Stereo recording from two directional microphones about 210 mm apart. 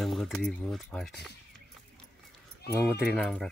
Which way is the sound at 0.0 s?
Centre (ahead or behind).